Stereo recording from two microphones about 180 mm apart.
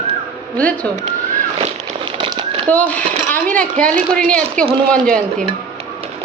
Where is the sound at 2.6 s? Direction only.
10° left (ahead or behind).